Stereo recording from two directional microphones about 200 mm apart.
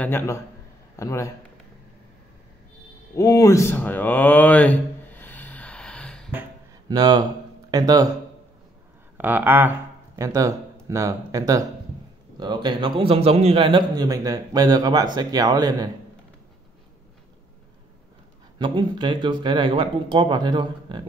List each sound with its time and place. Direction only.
0.0 s a man's voice: 10° left (ahead or behind)
3.2 s a sound: 15° left (ahead or behind)
6.9 s a man's voice: 20° right (ahead or behind)
9.1 s a man's voice: 10° right (ahead or behind)
18.6 s a man's voice: 25° right (ahead or behind)